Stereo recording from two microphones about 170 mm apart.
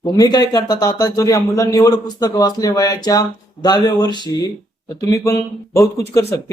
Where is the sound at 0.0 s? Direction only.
25° left (ahead or behind).